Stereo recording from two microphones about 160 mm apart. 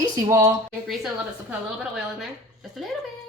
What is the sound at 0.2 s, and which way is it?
Speech, 20° right (ahead or behind).